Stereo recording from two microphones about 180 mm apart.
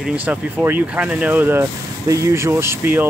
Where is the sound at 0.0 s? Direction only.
5° right (ahead or behind).